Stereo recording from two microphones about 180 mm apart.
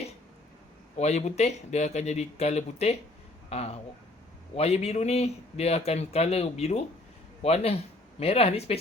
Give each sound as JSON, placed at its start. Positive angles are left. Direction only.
{"t": 0.9, "sound": "speech", "side_deg": 40}